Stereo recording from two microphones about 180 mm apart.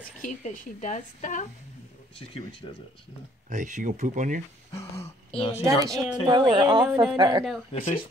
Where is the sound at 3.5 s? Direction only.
45° right (ahead or behind).